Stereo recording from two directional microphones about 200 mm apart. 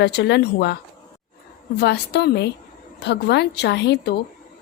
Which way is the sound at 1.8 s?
55° left (ahead or behind).